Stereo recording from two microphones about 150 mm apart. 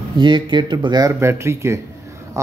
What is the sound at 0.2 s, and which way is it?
Speech, 30° right (ahead or behind).